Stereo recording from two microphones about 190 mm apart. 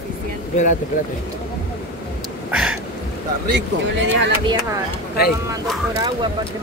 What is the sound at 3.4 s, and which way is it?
Speech, 65° right (ahead or behind).